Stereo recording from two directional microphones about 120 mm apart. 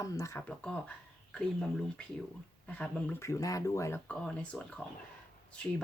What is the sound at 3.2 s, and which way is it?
Speech, 25° left (ahead or behind).